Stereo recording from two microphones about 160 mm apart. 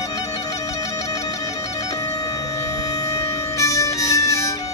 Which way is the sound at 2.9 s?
20° left (ahead or behind).